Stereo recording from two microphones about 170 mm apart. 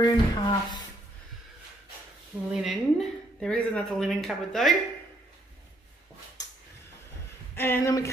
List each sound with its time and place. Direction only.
0.0 s speech: 25° left (ahead or behind)
2.5 s a woman's voice: centre (ahead or behind)
7.5 s speech: 15° left (ahead or behind)